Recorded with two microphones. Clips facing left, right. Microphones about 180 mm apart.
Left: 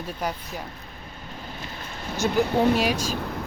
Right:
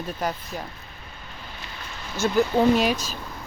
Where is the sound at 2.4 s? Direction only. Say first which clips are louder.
Right 2 dB; 60° left (ahead or behind).